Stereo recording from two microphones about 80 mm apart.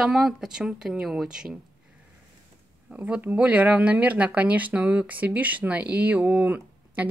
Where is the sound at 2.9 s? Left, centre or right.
Centre.